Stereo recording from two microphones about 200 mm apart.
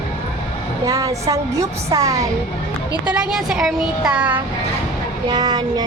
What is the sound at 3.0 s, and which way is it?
Speech, 5° right (ahead or behind).